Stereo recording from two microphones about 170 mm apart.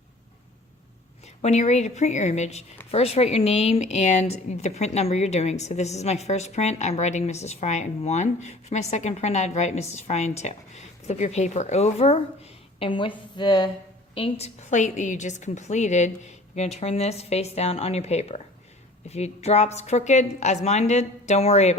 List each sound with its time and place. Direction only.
1.4 s a woman's voice: 40° left (ahead or behind)
14.2 s speech: 40° left (ahead or behind)